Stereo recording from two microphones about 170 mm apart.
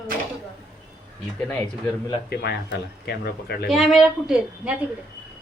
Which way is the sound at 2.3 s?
70° left (ahead or behind).